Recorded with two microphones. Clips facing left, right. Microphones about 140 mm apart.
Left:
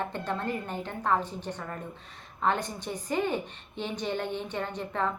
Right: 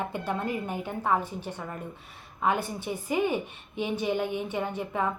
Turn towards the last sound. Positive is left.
turn(degrees=-10)  # may be behind; listen again after turning